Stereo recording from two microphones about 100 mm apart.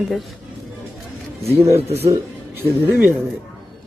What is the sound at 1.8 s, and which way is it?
Speech, 90° right.